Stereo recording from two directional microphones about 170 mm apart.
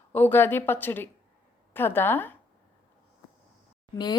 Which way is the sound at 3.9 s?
25° left (ahead or behind).